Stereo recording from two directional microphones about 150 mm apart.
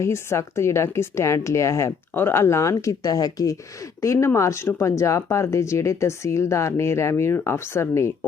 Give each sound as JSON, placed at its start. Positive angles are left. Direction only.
{"t": 0.0, "sound": "speech", "side_deg": 20}